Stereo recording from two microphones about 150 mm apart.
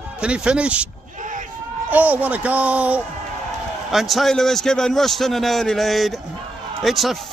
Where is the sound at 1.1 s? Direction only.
60° right (ahead or behind).